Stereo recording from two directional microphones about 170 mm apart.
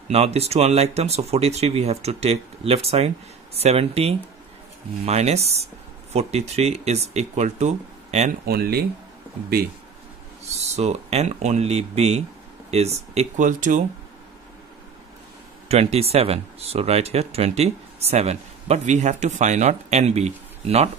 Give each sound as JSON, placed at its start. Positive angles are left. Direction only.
{"t": 0.1, "sound": "speech", "side_deg": -40}
{"t": 8.5, "sound": "speech", "side_deg": -65}
{"t": 10.6, "sound": "speech", "side_deg": -40}
{"t": 15.7, "sound": "speech", "side_deg": -35}